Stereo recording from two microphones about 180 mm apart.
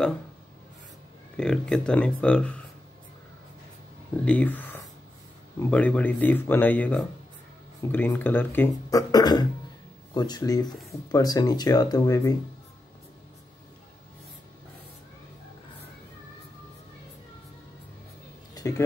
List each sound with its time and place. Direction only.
1.3 s speech: 5° left (ahead or behind)
4.2 s speech: 5° left (ahead or behind)
18.5 s a sound: 20° left (ahead or behind)